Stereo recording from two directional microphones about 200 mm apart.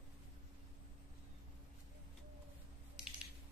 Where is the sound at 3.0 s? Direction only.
5° right (ahead or behind).